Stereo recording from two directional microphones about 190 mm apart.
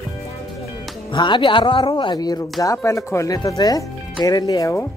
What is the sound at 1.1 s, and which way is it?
Speech, 25° left (ahead or behind).